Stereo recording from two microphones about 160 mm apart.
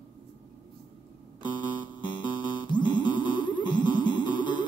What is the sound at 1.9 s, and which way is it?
Music, 30° left (ahead or behind).